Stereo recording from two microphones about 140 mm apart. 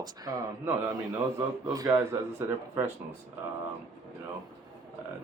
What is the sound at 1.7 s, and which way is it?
Speech, 25° right (ahead or behind).